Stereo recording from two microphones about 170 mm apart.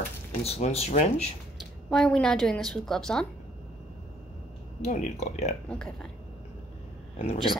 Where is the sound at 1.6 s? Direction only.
5° left (ahead or behind).